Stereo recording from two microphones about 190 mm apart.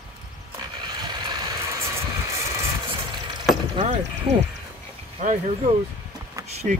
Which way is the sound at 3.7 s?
35° right (ahead or behind).